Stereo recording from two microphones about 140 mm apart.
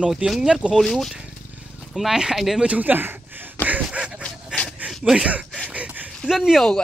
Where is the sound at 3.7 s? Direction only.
10° right (ahead or behind).